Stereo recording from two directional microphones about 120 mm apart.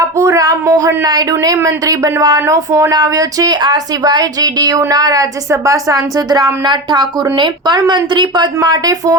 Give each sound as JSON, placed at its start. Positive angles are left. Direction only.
{"t": 0.2, "sound": "a woman's voice", "side_deg": -25}